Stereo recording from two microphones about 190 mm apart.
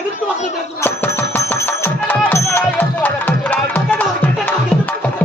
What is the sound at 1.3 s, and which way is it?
Music, 10° left (ahead or behind).